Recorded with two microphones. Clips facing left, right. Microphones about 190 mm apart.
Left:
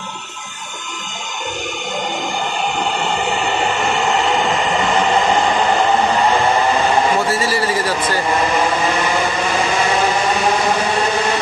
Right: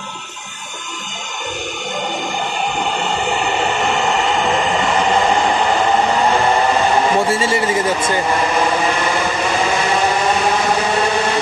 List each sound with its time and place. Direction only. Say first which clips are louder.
7.2 s a man's voice: right 1 dB; 25° right (ahead or behind)